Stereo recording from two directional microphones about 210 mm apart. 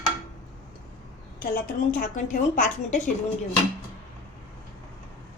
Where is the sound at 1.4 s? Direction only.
45° left (ahead or behind).